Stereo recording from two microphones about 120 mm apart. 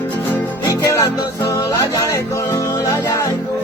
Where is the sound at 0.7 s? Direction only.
30° left (ahead or behind).